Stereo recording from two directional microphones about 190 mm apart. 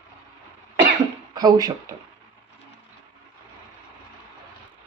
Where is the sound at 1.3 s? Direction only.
20° right (ahead or behind).